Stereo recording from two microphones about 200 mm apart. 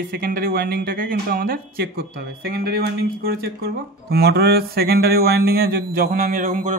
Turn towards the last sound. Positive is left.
turn(degrees=-40)  # may be behind; listen again after turning